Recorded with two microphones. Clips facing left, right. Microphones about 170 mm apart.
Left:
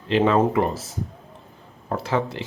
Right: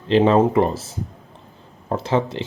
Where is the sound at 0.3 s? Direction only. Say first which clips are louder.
Right 3 dB; 30° right (ahead or behind).